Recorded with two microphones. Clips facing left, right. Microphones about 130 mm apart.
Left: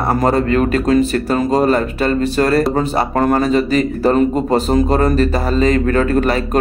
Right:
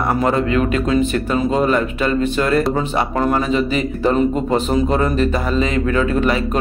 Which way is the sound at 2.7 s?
50° left (ahead or behind).